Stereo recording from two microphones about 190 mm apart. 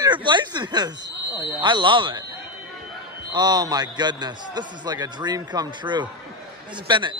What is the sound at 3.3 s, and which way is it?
A man's voice, 20° right (ahead or behind).